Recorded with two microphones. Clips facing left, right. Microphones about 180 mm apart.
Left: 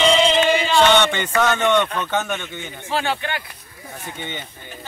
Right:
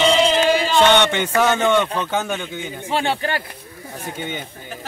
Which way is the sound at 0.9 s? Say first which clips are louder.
Right 1 dB; 15° right (ahead or behind).